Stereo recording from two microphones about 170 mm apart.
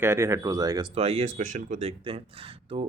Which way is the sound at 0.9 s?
35° right (ahead or behind).